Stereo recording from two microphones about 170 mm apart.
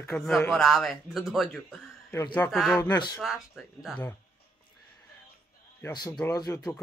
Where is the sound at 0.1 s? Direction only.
Centre (ahead or behind).